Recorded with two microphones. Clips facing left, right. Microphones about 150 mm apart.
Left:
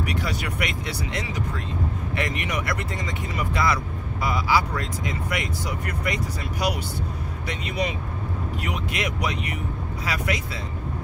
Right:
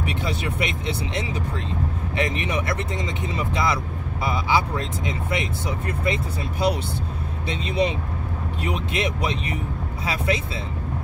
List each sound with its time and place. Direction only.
0.0 s speech: 25° right (ahead or behind)